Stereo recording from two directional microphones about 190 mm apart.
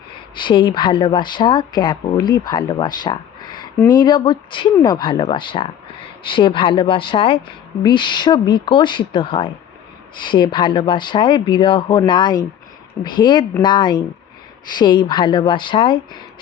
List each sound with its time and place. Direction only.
0.3 s speech: 25° left (ahead or behind)